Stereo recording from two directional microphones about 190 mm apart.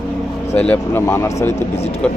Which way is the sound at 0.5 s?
10° left (ahead or behind).